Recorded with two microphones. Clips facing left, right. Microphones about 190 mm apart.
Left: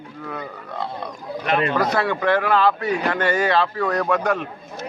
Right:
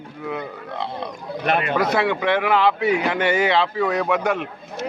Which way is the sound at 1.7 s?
5° right (ahead or behind).